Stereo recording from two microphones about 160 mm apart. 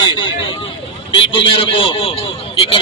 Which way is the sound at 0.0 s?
30° left (ahead or behind).